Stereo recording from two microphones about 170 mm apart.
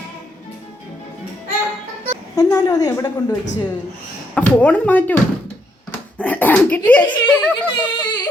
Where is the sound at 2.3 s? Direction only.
20° left (ahead or behind).